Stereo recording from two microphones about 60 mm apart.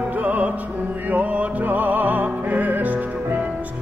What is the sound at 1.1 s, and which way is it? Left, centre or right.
Music, right.